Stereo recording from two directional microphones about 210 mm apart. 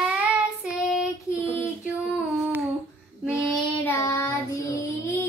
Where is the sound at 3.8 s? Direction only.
10° left (ahead or behind).